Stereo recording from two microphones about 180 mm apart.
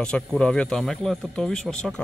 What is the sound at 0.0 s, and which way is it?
Speech, 5° left (ahead or behind).